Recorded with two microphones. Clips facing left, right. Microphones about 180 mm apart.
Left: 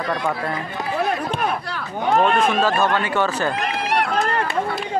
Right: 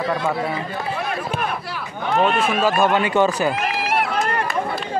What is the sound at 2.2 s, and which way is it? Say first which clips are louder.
Speech: left 1 dB; 5° right (ahead or behind).